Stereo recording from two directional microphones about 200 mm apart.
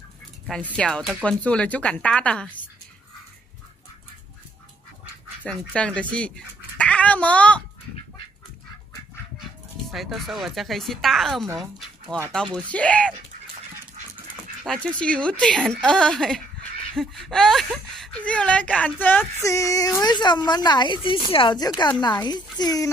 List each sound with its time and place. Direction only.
0.5 s speech: 5° left (ahead or behind)
5.4 s speech: 5° left (ahead or behind)
9.4 s speech: centre (ahead or behind)
14.6 s a child's voice: 5° left (ahead or behind); by 22.8 s 20° left (ahead or behind)